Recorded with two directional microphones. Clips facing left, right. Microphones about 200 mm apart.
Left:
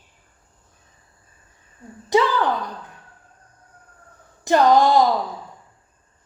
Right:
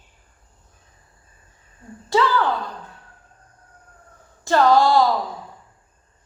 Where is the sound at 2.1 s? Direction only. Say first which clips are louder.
Left 1 dB; 15° left (ahead or behind).